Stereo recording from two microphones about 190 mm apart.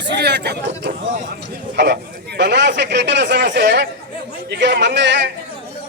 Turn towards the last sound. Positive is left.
turn(degrees=-65)  # may be behind; listen again after turning